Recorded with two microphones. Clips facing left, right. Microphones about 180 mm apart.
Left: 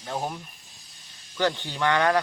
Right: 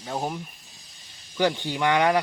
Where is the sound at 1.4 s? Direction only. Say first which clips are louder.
Right 2 dB; 15° right (ahead or behind).